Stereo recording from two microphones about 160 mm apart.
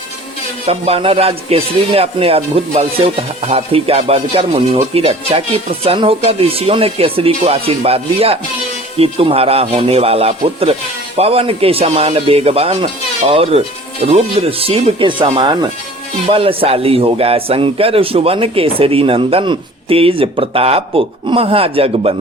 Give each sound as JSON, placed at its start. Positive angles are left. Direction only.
{"t": 0.6, "sound": "a man's voice", "side_deg": -40}